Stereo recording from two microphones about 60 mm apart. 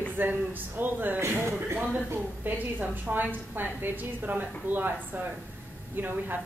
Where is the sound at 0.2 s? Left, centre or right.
Right.